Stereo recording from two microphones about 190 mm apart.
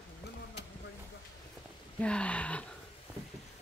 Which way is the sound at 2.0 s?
5° left (ahead or behind).